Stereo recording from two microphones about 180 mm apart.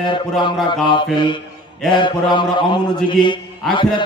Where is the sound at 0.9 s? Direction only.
25° left (ahead or behind).